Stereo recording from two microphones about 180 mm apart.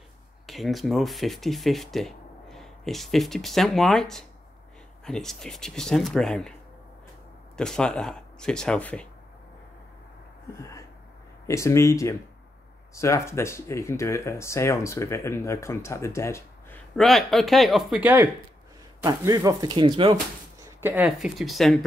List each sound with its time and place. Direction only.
0.5 s speech: centre (ahead or behind)
7.5 s speech: 5° left (ahead or behind)
10.5 s speech: 15° left (ahead or behind)
16.9 s speech: centre (ahead or behind)
19.0 s speech: 20° right (ahead or behind)
20.6 s speech: 10° right (ahead or behind)